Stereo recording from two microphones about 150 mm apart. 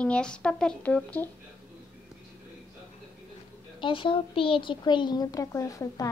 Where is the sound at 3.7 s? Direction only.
35° left (ahead or behind).